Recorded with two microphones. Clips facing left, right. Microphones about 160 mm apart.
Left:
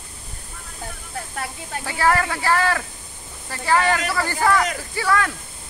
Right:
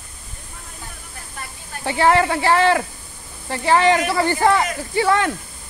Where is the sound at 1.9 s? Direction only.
25° right (ahead or behind).